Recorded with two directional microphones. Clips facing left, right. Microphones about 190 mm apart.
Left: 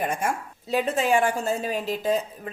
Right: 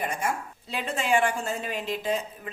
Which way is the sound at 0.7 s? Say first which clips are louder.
Left 4 dB; 45° left (ahead or behind).